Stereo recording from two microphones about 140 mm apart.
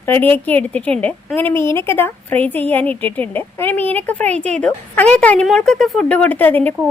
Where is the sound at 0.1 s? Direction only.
15° left (ahead or behind).